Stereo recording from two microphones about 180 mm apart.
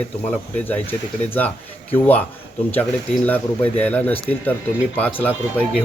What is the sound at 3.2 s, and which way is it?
Speech, 10° left (ahead or behind).